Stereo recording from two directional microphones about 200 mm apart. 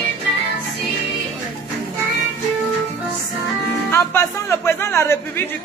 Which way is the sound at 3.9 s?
10° left (ahead or behind).